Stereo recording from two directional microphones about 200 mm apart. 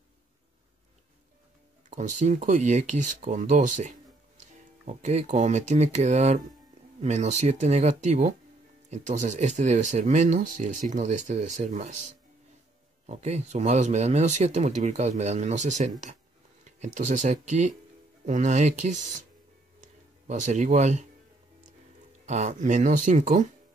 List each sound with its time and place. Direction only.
1.9 s speech: 40° right (ahead or behind)
19.8 s music: 40° right (ahead or behind)
22.2 s speech: 35° right (ahead or behind)